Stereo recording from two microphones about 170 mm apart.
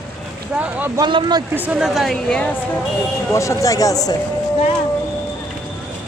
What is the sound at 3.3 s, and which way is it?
Speech, 20° left (ahead or behind).